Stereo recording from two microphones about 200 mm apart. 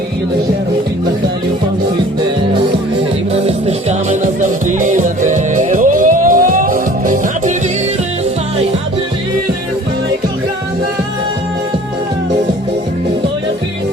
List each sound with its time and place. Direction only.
3.3 s music: 30° right (ahead or behind)